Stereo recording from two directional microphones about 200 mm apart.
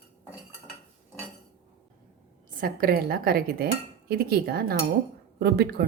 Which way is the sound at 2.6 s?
45° right (ahead or behind).